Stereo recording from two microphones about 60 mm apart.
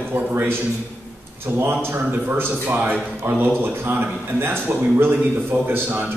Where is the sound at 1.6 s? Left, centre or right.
Right.